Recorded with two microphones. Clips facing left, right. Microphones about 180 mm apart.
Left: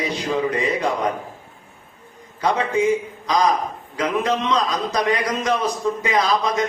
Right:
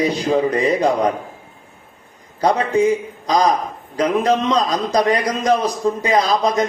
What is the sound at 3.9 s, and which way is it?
A man's voice, 35° right (ahead or behind).